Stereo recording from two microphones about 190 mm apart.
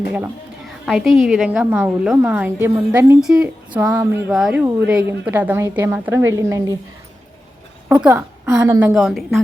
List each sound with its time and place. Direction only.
0.9 s a woman's voice: centre (ahead or behind)
3.8 s a woman's voice: 15° right (ahead or behind)
4.3 s a woman's voice: centre (ahead or behind)
8.0 s a woman's voice: 10° right (ahead or behind)